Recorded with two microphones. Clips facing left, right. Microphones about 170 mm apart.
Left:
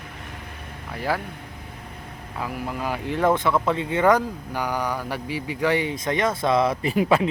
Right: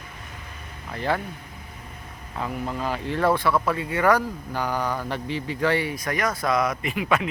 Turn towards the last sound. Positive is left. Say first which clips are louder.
# left 5 dB
turn(degrees=35)  # may be behind; listen again after turning